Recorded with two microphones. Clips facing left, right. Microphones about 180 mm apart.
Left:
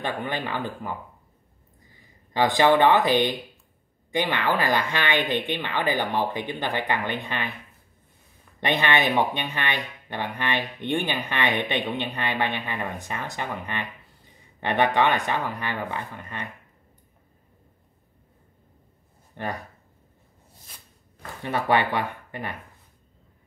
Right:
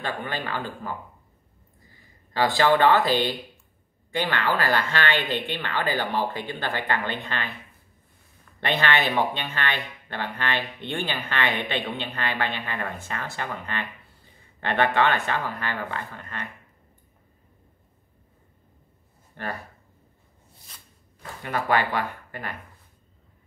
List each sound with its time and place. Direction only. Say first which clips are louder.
0.0 s speech: left 2 dB; 15° left (ahead or behind)
2.3 s speech: left 2 dB; 20° left (ahead or behind)
8.5 s speech: left 1 dB; 15° left (ahead or behind)
19.4 s speech: left 2 dB; 20° left (ahead or behind)
21.4 s speech: left 1 dB; 20° left (ahead or behind)